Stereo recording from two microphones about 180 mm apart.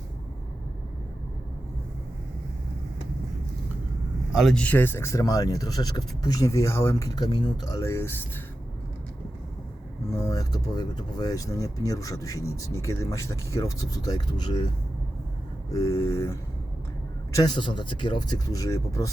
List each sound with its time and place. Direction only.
4.3 s speech: centre (ahead or behind)
10.2 s speech: 20° left (ahead or behind)
15.7 s speech: 15° left (ahead or behind)